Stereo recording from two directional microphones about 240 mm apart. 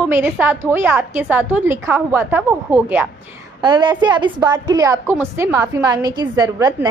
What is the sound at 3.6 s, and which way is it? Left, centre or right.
A woman's voice, centre.